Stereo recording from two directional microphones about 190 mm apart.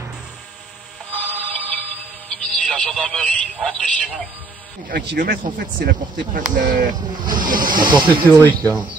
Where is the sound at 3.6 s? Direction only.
5° left (ahead or behind).